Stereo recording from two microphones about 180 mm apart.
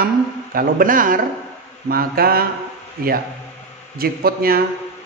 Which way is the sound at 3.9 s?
55° right (ahead or behind).